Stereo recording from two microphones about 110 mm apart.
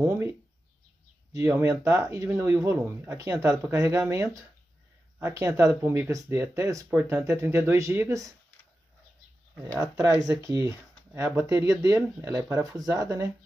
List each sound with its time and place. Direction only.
0.0 s speech: 20° right (ahead or behind)
1.3 s speech: 25° right (ahead or behind)
6.9 s speech: 15° right (ahead or behind)
9.7 s speech: 35° right (ahead or behind)